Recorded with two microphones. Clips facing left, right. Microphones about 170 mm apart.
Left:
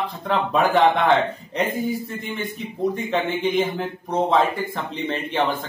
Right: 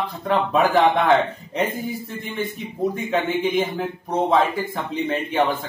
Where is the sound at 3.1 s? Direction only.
Centre (ahead or behind).